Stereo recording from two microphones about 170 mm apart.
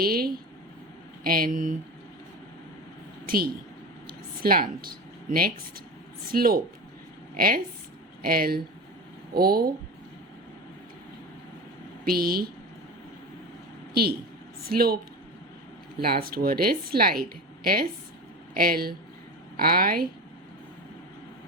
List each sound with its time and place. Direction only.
0.0 s a woman's voice: 60° right (ahead or behind)
3.2 s a woman's voice: 60° right (ahead or behind)
12.0 s a woman's voice: 60° right (ahead or behind)
13.9 s a woman's voice: 65° right (ahead or behind)
16.0 s a woman's voice: 60° right (ahead or behind)